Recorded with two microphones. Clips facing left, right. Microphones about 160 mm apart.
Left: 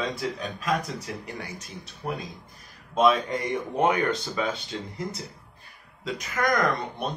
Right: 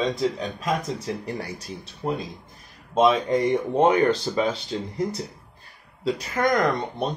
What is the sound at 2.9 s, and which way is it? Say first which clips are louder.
Speech: right 3 dB; 25° right (ahead or behind).